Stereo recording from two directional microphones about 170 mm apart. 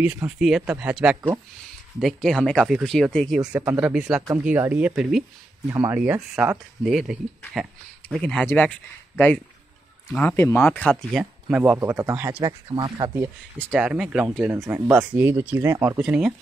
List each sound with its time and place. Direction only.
0.0 s speech: 10° right (ahead or behind)
6.3 s speech: 5° right (ahead or behind)
12.4 s speech: 25° right (ahead or behind)
13.1 s speech: 15° right (ahead or behind)
16.0 s speech: 5° right (ahead or behind)